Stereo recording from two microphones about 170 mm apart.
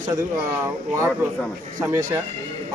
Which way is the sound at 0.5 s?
10° right (ahead or behind).